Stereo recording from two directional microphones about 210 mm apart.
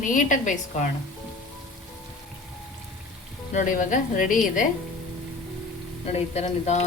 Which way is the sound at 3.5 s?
35° left (ahead or behind).